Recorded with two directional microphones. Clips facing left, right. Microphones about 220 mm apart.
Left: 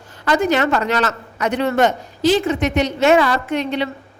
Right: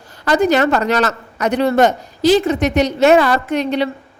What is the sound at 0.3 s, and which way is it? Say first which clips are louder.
A woman's voice: right 3 dB; 35° right (ahead or behind).